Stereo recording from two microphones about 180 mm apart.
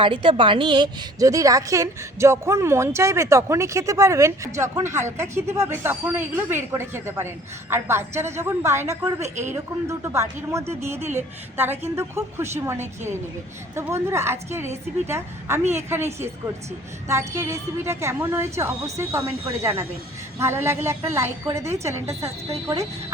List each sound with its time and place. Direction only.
0.0 s a woman's voice: 30° right (ahead or behind)
9.2 s a woman's voice: 40° right (ahead or behind)
10.0 s a woman's voice: 15° right (ahead or behind)
17.1 s a woman's voice: 15° right (ahead or behind)